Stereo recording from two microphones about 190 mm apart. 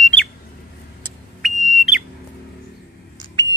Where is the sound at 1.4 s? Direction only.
Centre (ahead or behind).